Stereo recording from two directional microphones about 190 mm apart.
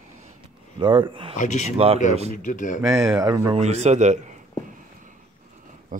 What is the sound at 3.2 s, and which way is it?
Speech, 15° right (ahead or behind).